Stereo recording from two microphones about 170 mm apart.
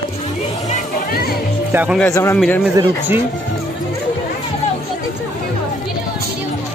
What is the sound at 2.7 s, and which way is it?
Speech, 15° right (ahead or behind).